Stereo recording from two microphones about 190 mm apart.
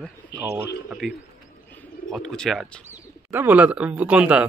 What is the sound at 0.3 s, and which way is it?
Speech, 65° left (ahead or behind).